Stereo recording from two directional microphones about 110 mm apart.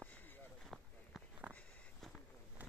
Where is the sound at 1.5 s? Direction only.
10° left (ahead or behind).